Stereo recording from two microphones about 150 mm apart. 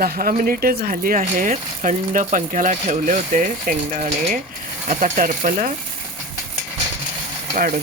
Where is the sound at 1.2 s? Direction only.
55° right (ahead or behind).